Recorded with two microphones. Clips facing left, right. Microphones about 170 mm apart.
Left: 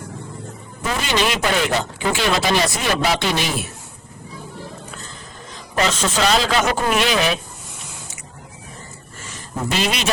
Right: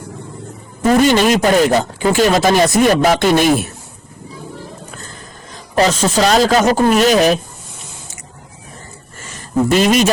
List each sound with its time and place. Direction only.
0.8 s speech: 45° right (ahead or behind)
5.7 s a man's voice: 40° right (ahead or behind)
9.7 s speech: 45° right (ahead or behind)